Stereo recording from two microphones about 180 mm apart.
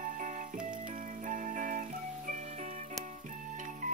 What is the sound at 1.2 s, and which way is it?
Music, 45° right (ahead or behind).